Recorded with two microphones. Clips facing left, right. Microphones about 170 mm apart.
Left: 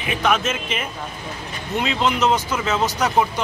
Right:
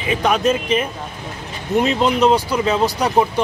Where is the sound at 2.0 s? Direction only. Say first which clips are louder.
Right 2 dB; 35° right (ahead or behind).